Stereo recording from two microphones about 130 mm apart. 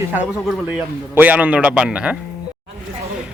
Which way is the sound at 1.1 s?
15° right (ahead or behind).